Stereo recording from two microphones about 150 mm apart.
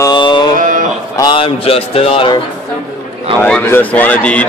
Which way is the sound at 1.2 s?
35° left (ahead or behind).